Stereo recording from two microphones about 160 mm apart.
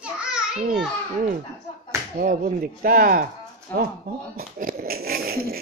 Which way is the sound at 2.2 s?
60° right (ahead or behind).